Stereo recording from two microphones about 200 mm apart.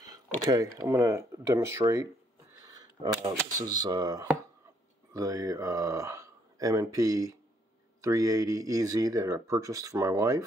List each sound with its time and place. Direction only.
0.5 s speech: 20° right (ahead or behind)
2.7 s a sound: 20° right (ahead or behind)
3.6 s speech: 20° right (ahead or behind)